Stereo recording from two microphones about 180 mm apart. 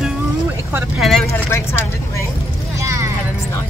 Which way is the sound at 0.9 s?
Centre (ahead or behind).